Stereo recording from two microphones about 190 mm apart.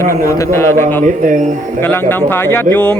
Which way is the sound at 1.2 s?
45° right (ahead or behind).